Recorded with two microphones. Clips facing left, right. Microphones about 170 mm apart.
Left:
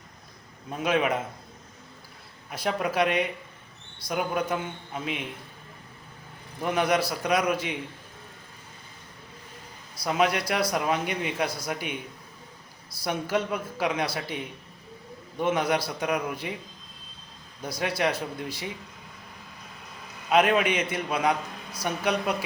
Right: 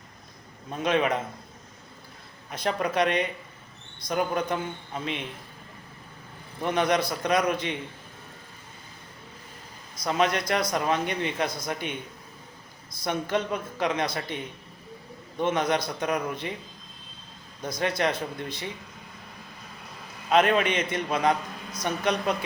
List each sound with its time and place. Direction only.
0.7 s a man's voice: 5° left (ahead or behind)
2.5 s a man's voice: 5° left (ahead or behind)
6.6 s a man's voice: 5° left (ahead or behind)
10.0 s a man's voice: 5° left (ahead or behind)
13.0 s a man's voice: 5° left (ahead or behind)
17.6 s a man's voice: 10° left (ahead or behind)
20.3 s a man's voice: 5° left (ahead or behind)